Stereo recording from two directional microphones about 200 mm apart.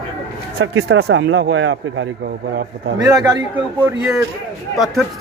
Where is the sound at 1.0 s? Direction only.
65° right (ahead or behind).